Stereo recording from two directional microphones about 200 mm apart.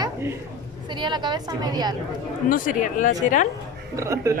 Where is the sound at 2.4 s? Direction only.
40° left (ahead or behind).